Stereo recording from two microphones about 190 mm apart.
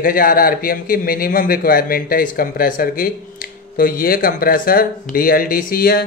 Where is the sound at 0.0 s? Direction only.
45° left (ahead or behind).